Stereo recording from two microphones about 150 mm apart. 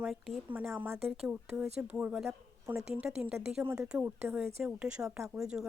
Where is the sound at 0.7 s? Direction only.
15° right (ahead or behind).